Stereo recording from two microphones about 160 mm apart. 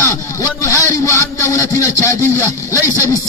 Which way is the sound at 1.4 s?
20° left (ahead or behind).